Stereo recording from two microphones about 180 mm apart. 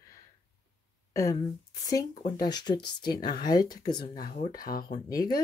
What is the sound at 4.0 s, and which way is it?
Speech, 50° left (ahead or behind).